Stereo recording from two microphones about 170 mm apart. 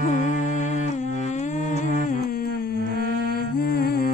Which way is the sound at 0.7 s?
45° left (ahead or behind).